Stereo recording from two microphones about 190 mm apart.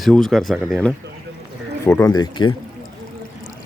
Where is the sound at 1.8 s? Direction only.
15° left (ahead or behind).